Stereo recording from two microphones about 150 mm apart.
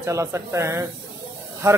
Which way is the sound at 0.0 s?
20° right (ahead or behind).